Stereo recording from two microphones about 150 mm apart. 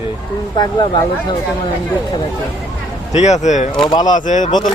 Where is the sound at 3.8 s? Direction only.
30° left (ahead or behind).